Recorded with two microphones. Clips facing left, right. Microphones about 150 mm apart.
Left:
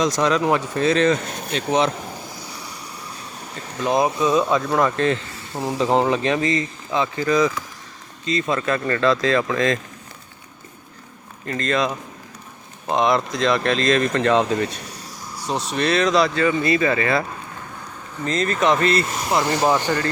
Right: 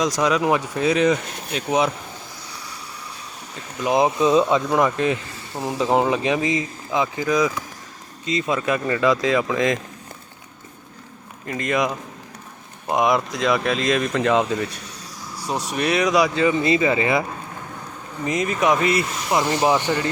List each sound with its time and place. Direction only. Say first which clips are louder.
0.0 s speech: left 1 dB; 10° right (ahead or behind)
3.8 s speech: right 1 dB; 20° right (ahead or behind)
11.4 s speech: even; 10° right (ahead or behind)
12.9 s speech: even; 10° right (ahead or behind)
15.4 s speech: left 1 dB; 10° right (ahead or behind)
18.3 s speech: left 1 dB; 10° right (ahead or behind)